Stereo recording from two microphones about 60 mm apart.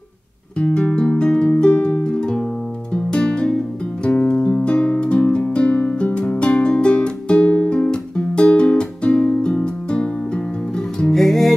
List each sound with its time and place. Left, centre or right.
0.6 s music: centre